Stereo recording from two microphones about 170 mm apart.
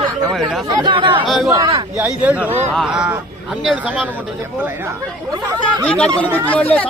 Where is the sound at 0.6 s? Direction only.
25° right (ahead or behind).